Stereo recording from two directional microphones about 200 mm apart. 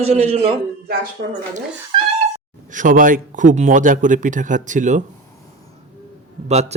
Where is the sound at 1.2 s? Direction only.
55° right (ahead or behind).